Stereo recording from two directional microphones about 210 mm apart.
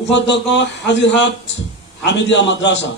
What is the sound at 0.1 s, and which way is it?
A man's voice, 55° left (ahead or behind).